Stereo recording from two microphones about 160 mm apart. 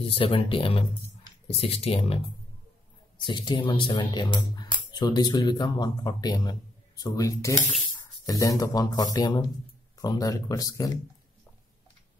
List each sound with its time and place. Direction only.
0.0 s speech: 35° left (ahead or behind)
3.2 s speech: 30° left (ahead or behind)